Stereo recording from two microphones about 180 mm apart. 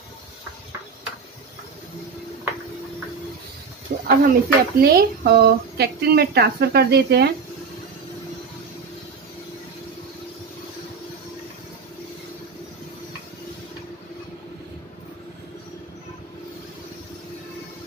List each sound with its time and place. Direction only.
3.9 s speech: 50° right (ahead or behind)